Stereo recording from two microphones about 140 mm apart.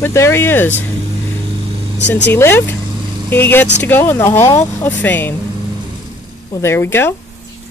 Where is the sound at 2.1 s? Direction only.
15° left (ahead or behind).